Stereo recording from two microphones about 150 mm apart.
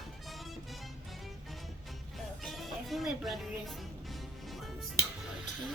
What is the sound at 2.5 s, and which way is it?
Music, centre (ahead or behind).